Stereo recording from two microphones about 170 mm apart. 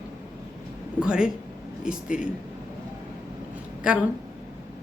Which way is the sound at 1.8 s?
50° left (ahead or behind).